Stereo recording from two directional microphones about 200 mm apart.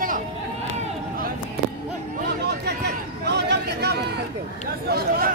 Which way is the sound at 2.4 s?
55° right (ahead or behind).